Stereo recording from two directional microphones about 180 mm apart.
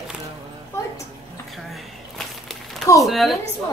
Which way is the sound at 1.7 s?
Centre (ahead or behind).